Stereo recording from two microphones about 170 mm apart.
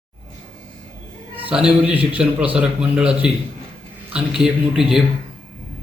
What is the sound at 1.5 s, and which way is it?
A man's voice, 5° right (ahead or behind).